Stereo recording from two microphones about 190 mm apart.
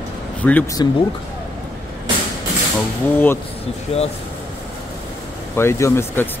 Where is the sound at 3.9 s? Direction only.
30° left (ahead or behind).